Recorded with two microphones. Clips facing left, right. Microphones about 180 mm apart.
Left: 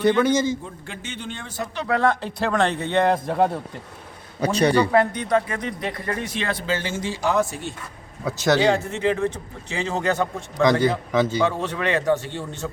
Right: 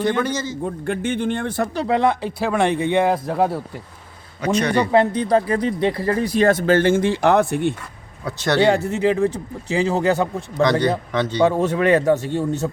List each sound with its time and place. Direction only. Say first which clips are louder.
0.1 s a man's voice: left 3 dB; 15° left (ahead or behind)
0.6 s speech: right 13 dB; 55° right (ahead or behind)
1.9 s speech: even; 15° right (ahead or behind)
4.4 s speech: even; 35° left (ahead or behind)
4.7 s speech: right 2 dB; 25° right (ahead or behind); by 7.8 s 60° right (ahead or behind)
9.0 s speech: right 3 dB; 35° right (ahead or behind)
10.6 s a man's voice: right 1 dB; 5° left (ahead or behind)
11.4 s a man's voice: right 7 dB; 45° right (ahead or behind)